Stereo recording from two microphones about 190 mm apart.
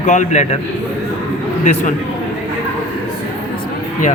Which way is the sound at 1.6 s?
40° left (ahead or behind).